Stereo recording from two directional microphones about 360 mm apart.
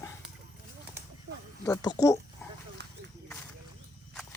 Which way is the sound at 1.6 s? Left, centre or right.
Centre.